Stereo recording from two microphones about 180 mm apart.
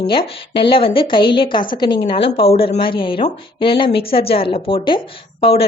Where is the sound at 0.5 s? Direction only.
30° left (ahead or behind).